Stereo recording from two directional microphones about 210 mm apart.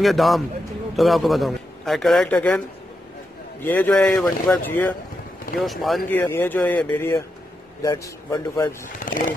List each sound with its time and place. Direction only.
0.0 s a man's voice: centre (ahead or behind)
3.6 s speech: 10° left (ahead or behind)
8.8 s speech: 40° left (ahead or behind)